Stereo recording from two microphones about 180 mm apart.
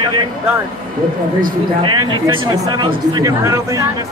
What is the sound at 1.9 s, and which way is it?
Speech, 25° right (ahead or behind).